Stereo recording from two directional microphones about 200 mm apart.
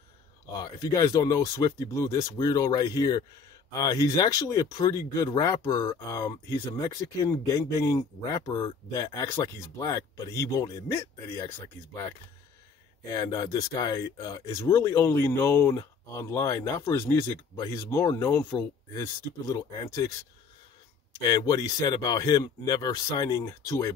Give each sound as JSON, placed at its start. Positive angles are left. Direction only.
{"t": 0.6, "sound": "speech", "side_deg": 20}
{"t": 13.0, "sound": "speech", "side_deg": 20}
{"t": 21.2, "sound": "speech", "side_deg": 20}